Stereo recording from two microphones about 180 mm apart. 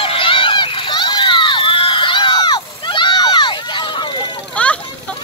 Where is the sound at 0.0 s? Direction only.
30° left (ahead or behind).